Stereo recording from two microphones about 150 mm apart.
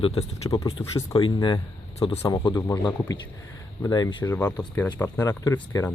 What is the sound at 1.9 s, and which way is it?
Speech, 45° left (ahead or behind).